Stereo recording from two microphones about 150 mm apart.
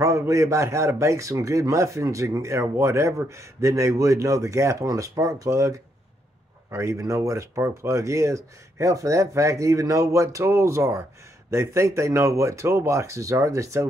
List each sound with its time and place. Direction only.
0.0 s a man's voice: 20° right (ahead or behind)